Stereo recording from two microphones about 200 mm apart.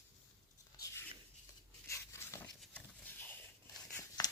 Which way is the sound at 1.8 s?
15° left (ahead or behind).